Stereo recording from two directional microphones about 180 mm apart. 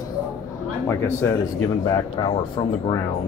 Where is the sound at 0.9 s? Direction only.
15° left (ahead or behind).